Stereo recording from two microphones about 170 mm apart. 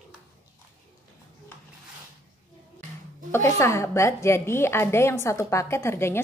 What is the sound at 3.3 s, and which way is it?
A woman's voice, 15° left (ahead or behind).